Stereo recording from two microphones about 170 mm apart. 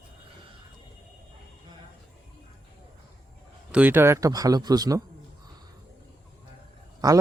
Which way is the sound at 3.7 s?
10° right (ahead or behind).